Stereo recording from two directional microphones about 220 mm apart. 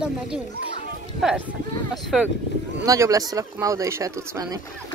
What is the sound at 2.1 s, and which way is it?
Speech, centre (ahead or behind).